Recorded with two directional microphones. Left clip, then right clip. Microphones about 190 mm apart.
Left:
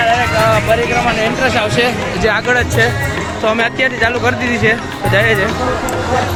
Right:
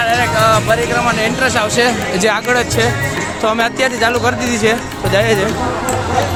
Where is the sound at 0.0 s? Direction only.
5° left (ahead or behind).